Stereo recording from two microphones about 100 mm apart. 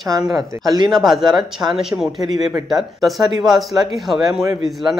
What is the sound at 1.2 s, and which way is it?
Speech, 45° right (ahead or behind).